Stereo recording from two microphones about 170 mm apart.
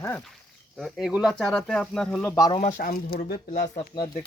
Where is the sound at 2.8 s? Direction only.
60° left (ahead or behind).